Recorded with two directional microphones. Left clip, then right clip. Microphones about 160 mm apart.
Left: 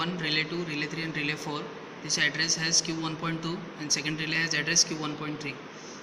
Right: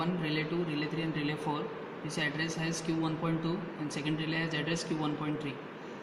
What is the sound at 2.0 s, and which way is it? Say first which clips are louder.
Speech: left 8 dB; 20° right (ahead or behind).